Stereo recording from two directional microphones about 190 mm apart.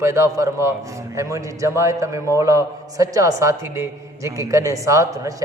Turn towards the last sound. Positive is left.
turn(degrees=-15)  # may be behind; listen again after turning